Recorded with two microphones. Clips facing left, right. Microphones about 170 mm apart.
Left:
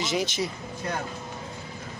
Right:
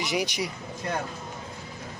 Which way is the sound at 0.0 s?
15° right (ahead or behind).